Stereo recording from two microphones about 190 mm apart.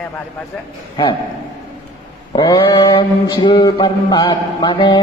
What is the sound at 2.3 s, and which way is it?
Mantra, 20° left (ahead or behind).